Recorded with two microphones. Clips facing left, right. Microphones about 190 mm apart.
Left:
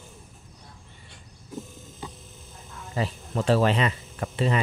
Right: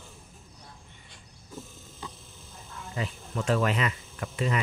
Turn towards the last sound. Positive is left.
turn(degrees=30)  # may be behind; listen again after turning